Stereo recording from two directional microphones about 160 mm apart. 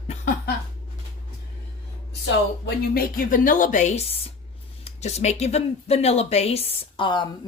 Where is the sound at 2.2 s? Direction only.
80° left.